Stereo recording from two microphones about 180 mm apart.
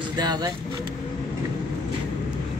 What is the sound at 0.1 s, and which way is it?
Speech, 25° right (ahead or behind).